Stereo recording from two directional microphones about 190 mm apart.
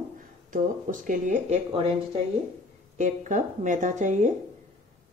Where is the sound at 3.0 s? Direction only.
40° right (ahead or behind).